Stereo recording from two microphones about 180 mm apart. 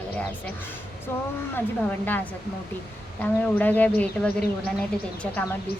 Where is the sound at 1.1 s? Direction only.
15° left (ahead or behind).